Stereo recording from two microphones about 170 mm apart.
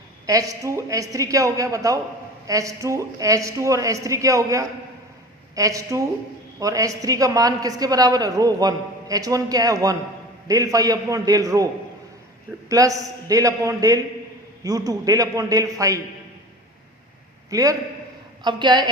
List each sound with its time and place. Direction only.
0.3 s a woman's voice: 20° right (ahead or behind)
17.5 s a woman's voice: 20° right (ahead or behind)